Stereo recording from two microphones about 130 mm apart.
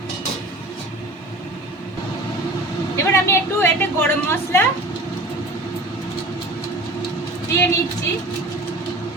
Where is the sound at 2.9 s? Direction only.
20° left (ahead or behind).